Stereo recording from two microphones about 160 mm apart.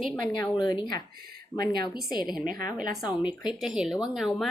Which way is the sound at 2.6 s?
60° right (ahead or behind).